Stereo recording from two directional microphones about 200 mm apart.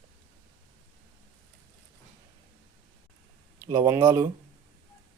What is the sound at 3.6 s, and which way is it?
Speech, 15° right (ahead or behind).